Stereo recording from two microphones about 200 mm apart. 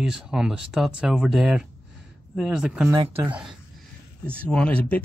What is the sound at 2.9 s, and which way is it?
Speech, 15° right (ahead or behind).